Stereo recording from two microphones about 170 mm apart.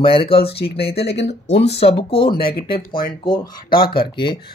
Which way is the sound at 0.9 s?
85° left.